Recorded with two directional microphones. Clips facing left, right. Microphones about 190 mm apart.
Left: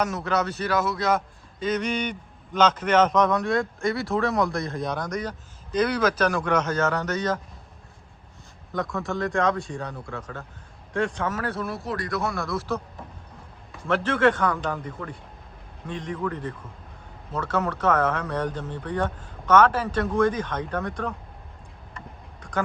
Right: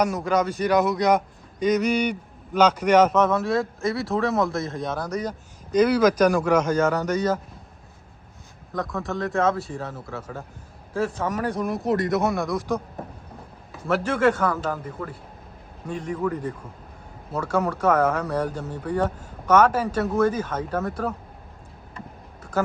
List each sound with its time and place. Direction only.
0.0 s a man's voice: 10° right (ahead or behind)
8.7 s a man's voice: centre (ahead or behind)
13.8 s a man's voice: 10° right (ahead or behind)
21.9 s vehicle: 5° right (ahead or behind)